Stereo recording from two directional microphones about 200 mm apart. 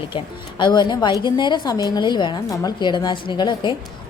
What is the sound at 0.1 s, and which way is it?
A woman's voice, 25° left (ahead or behind).